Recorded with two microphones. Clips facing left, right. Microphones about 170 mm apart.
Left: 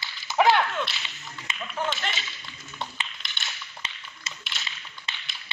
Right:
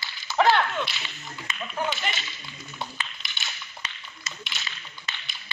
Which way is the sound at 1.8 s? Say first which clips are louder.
Right 1 dB; 5° right (ahead or behind).